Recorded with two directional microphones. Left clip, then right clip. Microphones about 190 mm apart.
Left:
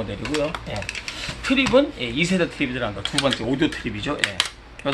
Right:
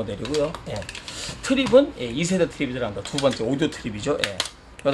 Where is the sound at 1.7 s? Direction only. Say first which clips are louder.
Right 5 dB; 45° right (ahead or behind).